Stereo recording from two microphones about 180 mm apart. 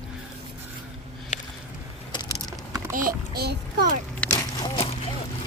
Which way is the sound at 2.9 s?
55° right (ahead or behind).